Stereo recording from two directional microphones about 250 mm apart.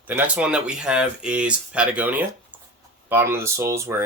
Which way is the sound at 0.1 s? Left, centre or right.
Centre.